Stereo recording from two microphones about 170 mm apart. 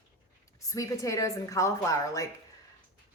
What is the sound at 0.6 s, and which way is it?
Speech, 20° left (ahead or behind).